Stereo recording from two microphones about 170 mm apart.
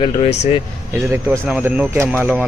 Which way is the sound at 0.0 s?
40° left (ahead or behind).